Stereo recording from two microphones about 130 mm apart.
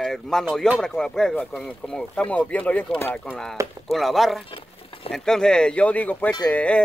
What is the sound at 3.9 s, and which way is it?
Speech, centre (ahead or behind).